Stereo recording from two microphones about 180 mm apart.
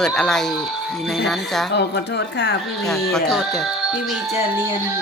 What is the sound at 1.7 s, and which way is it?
Speech, 70° left (ahead or behind).